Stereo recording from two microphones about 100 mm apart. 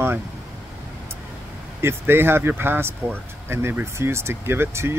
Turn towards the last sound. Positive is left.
turn(degrees=-25)  # may be behind; listen again after turning